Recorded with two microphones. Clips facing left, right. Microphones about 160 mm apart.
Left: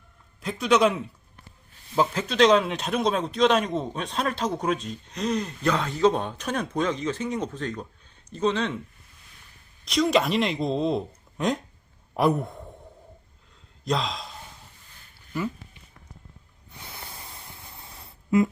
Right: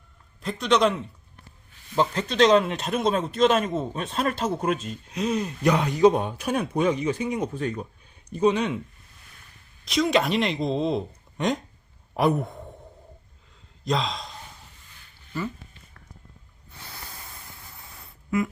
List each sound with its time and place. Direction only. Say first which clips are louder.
0.4 s speech: left 1 dB; 5° left (ahead or behind)
2.0 s a man's voice: even; 5° left (ahead or behind)
9.8 s speech: even; centre (ahead or behind)
12.1 s a sound: even; centre (ahead or behind)
13.8 s speech: right 1 dB; centre (ahead or behind)
15.3 s dog: left 1 dB; 10° left (ahead or behind)
17.7 s a sound: left 1 dB; 25° left (ahead or behind)